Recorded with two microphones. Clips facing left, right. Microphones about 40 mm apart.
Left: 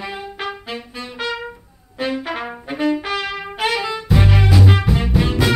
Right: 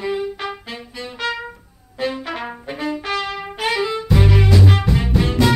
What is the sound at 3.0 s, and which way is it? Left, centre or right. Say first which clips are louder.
Music: even; centre.